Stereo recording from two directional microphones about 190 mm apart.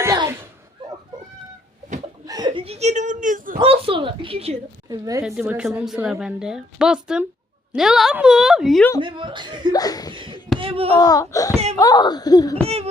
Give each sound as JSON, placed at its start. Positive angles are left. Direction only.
{"t": 0.0, "sound": "a sound", "side_deg": -15}
{"t": 0.8, "sound": "a sound", "side_deg": -25}
{"t": 2.2, "sound": "a sound", "side_deg": -20}
{"t": 3.6, "sound": "a woman's voice", "side_deg": -30}
{"t": 4.9, "sound": "a woman's voice", "side_deg": -15}
{"t": 5.2, "sound": "a woman's voice", "side_deg": -5}
{"t": 9.0, "sound": "a woman's voice", "side_deg": -25}
{"t": 9.7, "sound": "a child's voice", "side_deg": 20}
{"t": 10.6, "sound": "speech", "side_deg": -30}
{"t": 10.9, "sound": "a child's voice", "side_deg": 20}
{"t": 11.5, "sound": "speech", "side_deg": -35}
{"t": 11.8, "sound": "a child's voice", "side_deg": 20}
{"t": 12.6, "sound": "speech", "side_deg": -35}